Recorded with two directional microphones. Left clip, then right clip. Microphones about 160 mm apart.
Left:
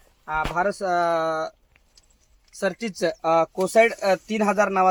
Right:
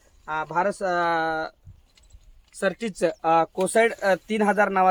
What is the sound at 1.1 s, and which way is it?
Speech, 30° right (ahead or behind).